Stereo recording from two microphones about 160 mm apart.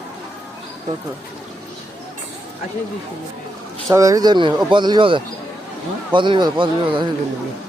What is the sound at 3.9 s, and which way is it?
Speech, 20° right (ahead or behind).